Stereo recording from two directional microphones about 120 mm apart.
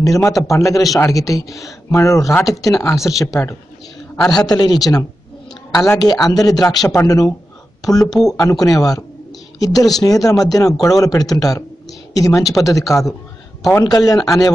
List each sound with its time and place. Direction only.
0.0 s a man's voice: 30° left (ahead or behind)
8.1 s speech: 5° left (ahead or behind)
8.4 s speech: 30° left (ahead or behind)